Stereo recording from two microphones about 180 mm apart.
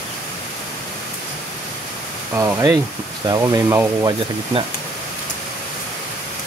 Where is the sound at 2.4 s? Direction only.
15° right (ahead or behind).